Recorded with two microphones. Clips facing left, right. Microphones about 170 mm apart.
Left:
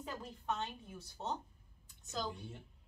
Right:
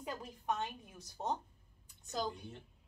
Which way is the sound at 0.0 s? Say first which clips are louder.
Right 2 dB; 15° right (ahead or behind).